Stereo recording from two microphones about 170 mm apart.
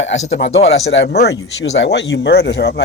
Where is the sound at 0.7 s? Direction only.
75° left (ahead or behind).